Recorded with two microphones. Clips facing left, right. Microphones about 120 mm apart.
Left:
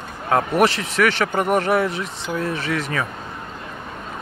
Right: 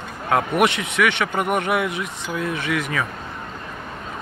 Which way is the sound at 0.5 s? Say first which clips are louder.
Left 1 dB; 35° left (ahead or behind).